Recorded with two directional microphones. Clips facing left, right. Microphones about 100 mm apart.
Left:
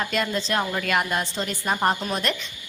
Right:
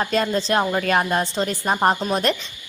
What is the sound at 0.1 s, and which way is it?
A woman's voice, 35° right (ahead or behind).